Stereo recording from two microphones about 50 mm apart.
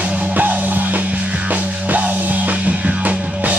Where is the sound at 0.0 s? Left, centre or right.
Right.